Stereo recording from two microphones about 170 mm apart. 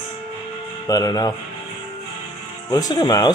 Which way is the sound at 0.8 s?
20° left (ahead or behind).